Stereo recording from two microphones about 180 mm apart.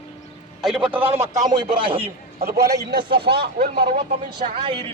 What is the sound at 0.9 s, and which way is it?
Speech, 10° right (ahead or behind).